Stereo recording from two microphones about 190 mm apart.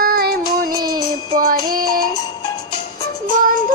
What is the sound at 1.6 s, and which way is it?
Music, 50° right (ahead or behind).